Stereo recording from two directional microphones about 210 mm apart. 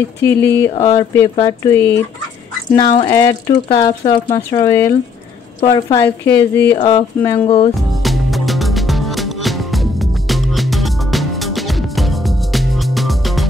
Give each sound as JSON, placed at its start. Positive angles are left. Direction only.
{"t": 0.2, "sound": "a woman's voice", "side_deg": 10}
{"t": 6.8, "sound": "speech", "side_deg": 25}
{"t": 7.2, "sound": "a woman's voice", "side_deg": 10}
{"t": 7.4, "sound": "speech", "side_deg": 25}
{"t": 7.7, "sound": "music", "side_deg": 0}